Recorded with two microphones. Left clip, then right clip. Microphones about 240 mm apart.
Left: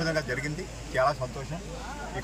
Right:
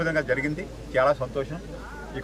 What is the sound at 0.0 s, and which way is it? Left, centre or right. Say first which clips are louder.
Speech: right 5 dB; right.